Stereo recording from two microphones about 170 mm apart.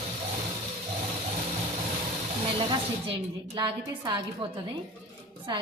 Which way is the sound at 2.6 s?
35° right (ahead or behind).